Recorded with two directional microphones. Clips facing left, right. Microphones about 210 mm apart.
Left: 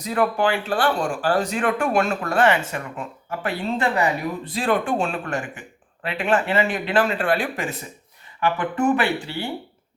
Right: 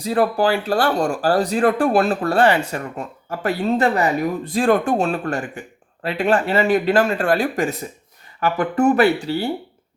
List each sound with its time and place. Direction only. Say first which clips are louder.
0.0 s speech: right 3 dB; 35° right (ahead or behind)